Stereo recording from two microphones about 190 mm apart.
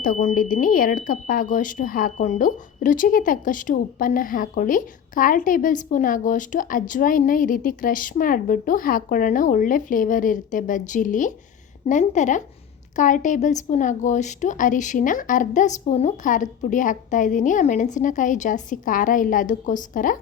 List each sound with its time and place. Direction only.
0.0 s a woman's voice: 45° left (ahead or behind)